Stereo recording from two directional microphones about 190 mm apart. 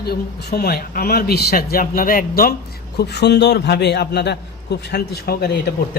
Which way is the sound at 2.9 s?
60° left (ahead or behind).